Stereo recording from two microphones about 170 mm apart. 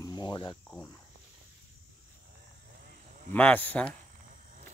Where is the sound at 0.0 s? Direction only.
25° left (ahead or behind).